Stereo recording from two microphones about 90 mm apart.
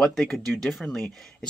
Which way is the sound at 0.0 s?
5° left (ahead or behind).